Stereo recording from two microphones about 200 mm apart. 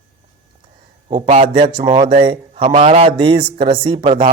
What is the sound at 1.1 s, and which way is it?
A man's voice, 25° right (ahead or behind).